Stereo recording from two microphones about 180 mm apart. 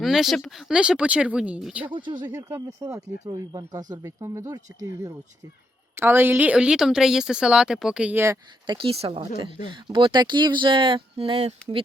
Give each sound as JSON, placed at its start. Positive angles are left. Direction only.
{"t": 0.0, "sound": "speech", "side_deg": 0}
{"t": 2.0, "sound": "a woman's voice", "side_deg": -25}